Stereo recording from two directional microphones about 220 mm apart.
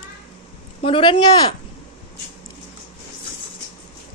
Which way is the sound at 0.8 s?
25° left (ahead or behind).